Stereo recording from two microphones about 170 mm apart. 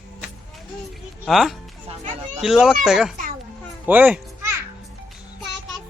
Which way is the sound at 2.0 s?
40° right (ahead or behind).